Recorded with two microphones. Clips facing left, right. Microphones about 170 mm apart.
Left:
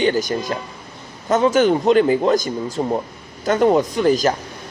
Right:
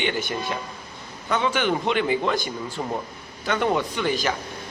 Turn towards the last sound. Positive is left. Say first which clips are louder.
# left 8 dB
turn(degrees=40)  # may be behind; listen again after turning